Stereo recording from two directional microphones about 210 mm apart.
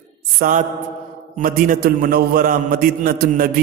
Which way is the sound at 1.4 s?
45° right (ahead or behind).